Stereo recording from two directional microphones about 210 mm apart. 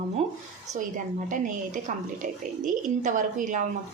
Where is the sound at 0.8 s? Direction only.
40° right (ahead or behind).